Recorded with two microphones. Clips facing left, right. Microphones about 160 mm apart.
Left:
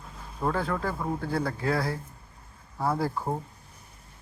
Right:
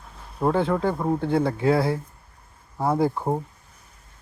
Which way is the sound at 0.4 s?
25° right (ahead or behind).